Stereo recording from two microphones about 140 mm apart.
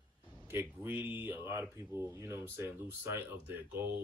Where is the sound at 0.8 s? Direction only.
15° right (ahead or behind).